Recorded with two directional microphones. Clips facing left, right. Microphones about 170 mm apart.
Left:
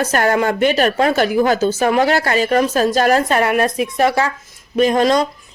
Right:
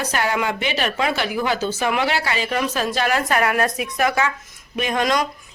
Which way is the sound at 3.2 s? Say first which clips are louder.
Left 4 dB; 25° left (ahead or behind).